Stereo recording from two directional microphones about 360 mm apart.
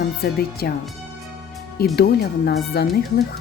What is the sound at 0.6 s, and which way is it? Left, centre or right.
Speech, left.